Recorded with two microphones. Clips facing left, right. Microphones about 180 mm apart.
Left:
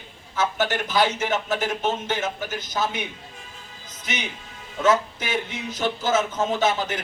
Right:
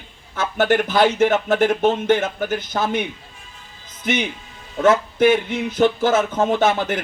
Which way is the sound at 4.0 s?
55° right (ahead or behind).